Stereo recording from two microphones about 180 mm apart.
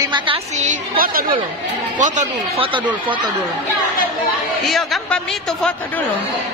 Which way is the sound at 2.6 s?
25° right (ahead or behind).